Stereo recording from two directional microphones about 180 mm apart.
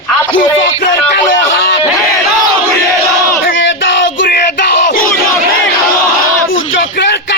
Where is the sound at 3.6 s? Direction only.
90° left.